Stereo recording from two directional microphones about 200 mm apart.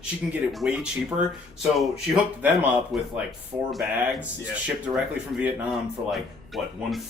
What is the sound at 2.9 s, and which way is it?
Speech, centre (ahead or behind).